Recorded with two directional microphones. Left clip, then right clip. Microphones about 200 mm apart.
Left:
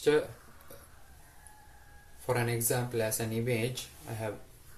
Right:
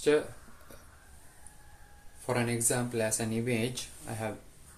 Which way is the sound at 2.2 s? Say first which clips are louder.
Even; 15° right (ahead or behind).